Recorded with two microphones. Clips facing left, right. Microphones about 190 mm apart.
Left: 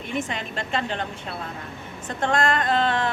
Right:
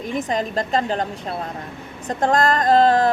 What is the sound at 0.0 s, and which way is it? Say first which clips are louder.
A woman's voice: right 6 dB; 40° right (ahead or behind).